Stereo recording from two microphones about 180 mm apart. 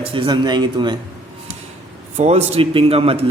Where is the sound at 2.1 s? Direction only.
35° right (ahead or behind).